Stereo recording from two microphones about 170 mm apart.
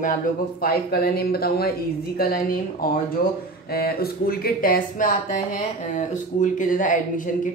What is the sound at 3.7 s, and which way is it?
Speech, 65° left (ahead or behind).